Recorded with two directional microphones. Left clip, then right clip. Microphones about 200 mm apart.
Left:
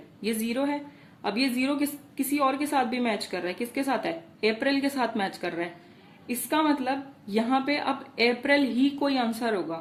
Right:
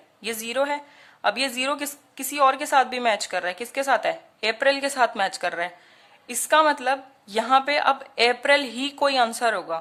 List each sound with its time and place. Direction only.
0.2 s a woman's voice: 40° right (ahead or behind)